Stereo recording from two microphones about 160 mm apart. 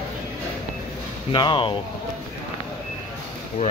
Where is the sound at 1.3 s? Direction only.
30° left (ahead or behind).